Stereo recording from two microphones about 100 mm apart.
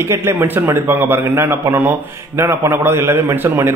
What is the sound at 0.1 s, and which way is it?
A man's voice, 25° right (ahead or behind).